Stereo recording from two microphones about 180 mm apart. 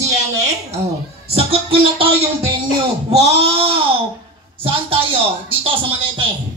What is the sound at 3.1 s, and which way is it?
Speech, 35° right (ahead or behind).